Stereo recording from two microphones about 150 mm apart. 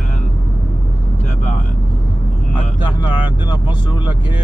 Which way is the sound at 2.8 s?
30° left (ahead or behind).